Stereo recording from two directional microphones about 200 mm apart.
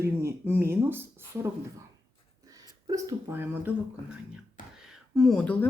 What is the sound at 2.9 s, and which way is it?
Speech, 15° right (ahead or behind).